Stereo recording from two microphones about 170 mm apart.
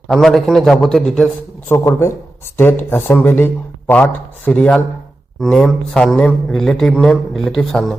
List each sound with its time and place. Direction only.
0.1 s a man's voice: centre (ahead or behind)
1.7 s a man's voice: 15° left (ahead or behind)